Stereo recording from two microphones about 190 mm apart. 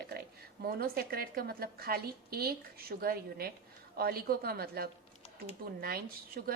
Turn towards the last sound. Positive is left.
turn(degrees=-55)  # may be behind; listen again after turning